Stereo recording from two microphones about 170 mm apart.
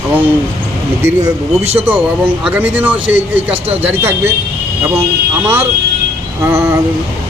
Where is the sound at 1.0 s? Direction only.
15° right (ahead or behind).